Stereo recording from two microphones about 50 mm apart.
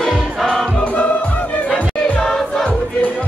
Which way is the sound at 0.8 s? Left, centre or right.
Left.